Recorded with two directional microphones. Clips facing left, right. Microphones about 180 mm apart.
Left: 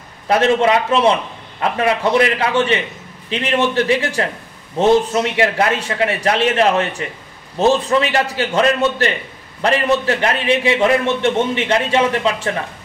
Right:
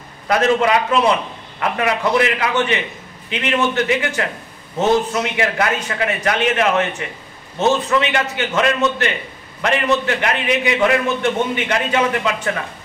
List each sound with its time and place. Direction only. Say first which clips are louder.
0.3 s a man's voice: left 2 dB; 25° left (ahead or behind)